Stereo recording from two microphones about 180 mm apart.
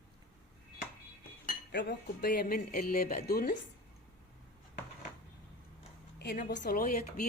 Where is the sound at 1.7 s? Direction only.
70° left (ahead or behind).